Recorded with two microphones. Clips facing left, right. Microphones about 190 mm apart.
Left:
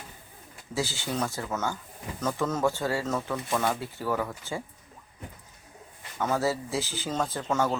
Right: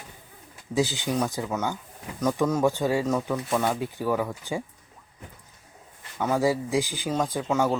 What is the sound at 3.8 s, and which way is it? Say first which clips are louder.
Speech: right 4 dB; 15° right (ahead or behind).